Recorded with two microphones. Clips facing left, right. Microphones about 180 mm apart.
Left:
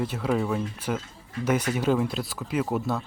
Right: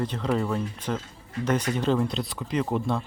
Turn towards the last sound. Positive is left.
turn(degrees=5)  # may be behind; listen again after turning